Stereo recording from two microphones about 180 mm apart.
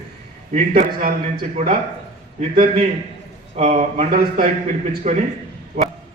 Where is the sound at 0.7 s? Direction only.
55° right (ahead or behind).